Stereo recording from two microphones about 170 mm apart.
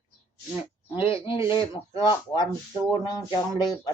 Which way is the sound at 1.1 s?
30° left (ahead or behind).